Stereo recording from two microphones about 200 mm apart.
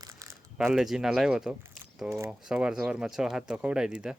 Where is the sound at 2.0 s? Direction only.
15° right (ahead or behind).